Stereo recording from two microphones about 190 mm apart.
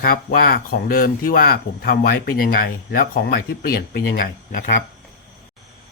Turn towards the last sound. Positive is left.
turn(degrees=45)  # may be behind; listen again after turning